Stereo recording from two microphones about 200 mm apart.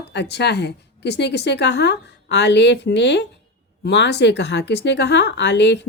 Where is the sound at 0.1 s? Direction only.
60° left (ahead or behind).